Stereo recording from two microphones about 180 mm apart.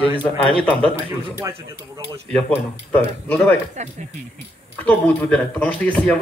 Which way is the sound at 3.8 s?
40° right (ahead or behind).